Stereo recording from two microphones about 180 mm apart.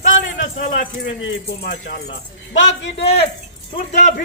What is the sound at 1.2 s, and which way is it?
Speech, 80° left.